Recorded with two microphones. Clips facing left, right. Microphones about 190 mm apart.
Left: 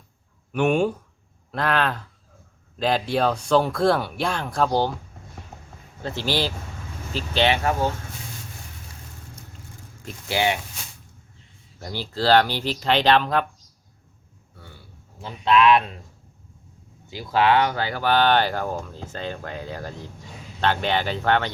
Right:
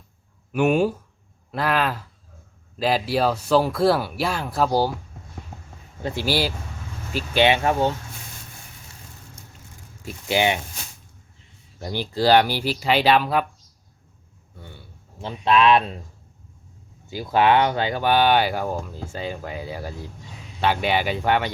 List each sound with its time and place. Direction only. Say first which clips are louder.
0.5 s speech: right 1 dB; 5° right (ahead or behind)
6.0 s speech: right 2 dB; 10° right (ahead or behind)
10.2 s speech: right 2 dB; 20° right (ahead or behind)
11.8 s speech: right 4 dB; 15° right (ahead or behind)
15.2 s speech: even; 25° right (ahead or behind)
17.3 s speech: right 1 dB; 20° right (ahead or behind)